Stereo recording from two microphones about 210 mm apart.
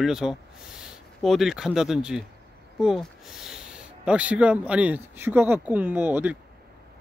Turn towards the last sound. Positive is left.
turn(degrees=-10)  # may be behind; listen again after turning